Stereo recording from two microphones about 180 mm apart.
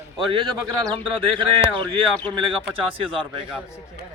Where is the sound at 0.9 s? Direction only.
25° right (ahead or behind).